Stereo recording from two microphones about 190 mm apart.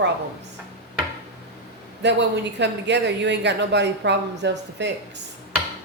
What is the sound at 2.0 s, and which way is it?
Speech, 65° right (ahead or behind).